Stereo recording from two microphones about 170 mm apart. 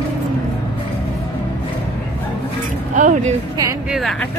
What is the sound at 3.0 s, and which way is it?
Speech, 50° right (ahead or behind).